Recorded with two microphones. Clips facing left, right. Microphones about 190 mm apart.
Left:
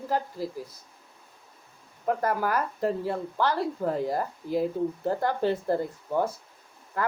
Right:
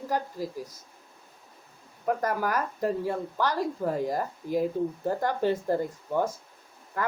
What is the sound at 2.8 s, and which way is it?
Speech, 15° right (ahead or behind).